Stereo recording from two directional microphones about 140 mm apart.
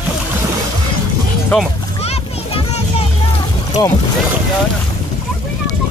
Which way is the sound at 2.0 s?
45° left (ahead or behind).